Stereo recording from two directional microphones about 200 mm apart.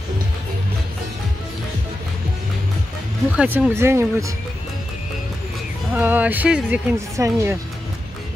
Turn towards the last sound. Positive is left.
turn(degrees=-10)  # may be behind; listen again after turning